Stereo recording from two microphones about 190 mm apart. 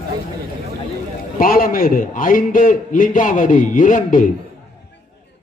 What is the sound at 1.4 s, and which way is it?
A man's voice, 50° left (ahead or behind).